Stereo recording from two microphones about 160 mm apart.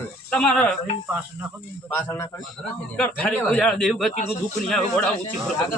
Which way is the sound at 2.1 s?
15° left (ahead or behind).